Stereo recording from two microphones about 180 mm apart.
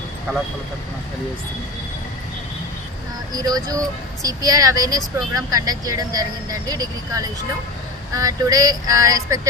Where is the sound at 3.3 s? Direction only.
20° right (ahead or behind).